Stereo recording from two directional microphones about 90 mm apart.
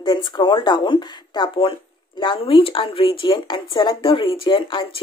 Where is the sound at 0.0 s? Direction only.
55° left (ahead or behind).